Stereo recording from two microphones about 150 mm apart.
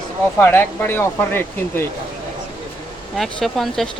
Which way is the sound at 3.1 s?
Centre (ahead or behind).